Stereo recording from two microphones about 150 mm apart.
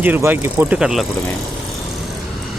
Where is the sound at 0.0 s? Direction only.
15° right (ahead or behind).